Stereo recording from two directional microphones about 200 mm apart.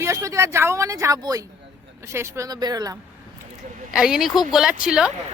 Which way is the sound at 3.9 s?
5° right (ahead or behind).